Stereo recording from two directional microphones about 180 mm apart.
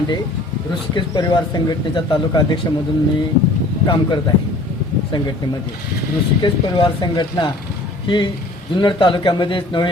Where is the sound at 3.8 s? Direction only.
25° left (ahead or behind).